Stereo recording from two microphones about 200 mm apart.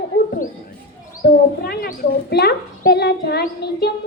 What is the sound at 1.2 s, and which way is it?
A woman's voice, 50° left (ahead or behind).